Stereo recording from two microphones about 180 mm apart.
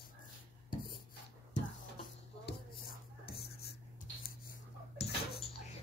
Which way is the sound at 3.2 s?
60° left (ahead or behind).